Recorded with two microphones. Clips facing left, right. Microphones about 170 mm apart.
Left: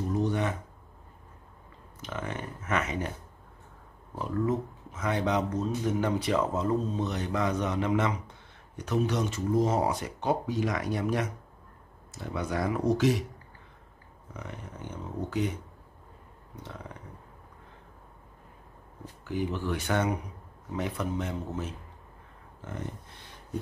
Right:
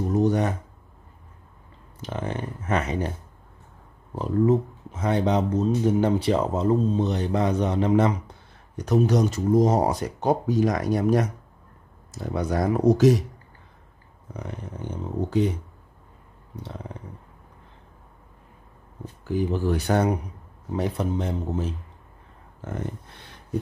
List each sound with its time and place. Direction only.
0.1 s a sound: 45° right (ahead or behind)
2.0 s speech: 35° right (ahead or behind)
4.1 s speech: 30° right (ahead or behind)
14.3 s speech: 35° right (ahead or behind)
19.2 s speech: 35° right (ahead or behind)